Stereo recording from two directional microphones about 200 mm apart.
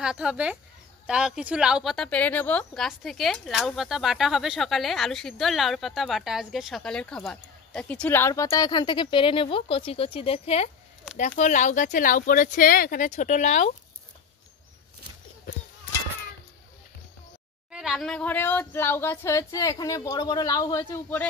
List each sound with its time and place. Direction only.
0.0 s speech: 5° right (ahead or behind); by 13.7 s 35° left (ahead or behind)
17.6 s speech: 5° right (ahead or behind)